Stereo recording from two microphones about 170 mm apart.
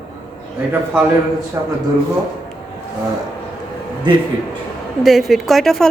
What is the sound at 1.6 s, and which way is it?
Speech, 15° right (ahead or behind).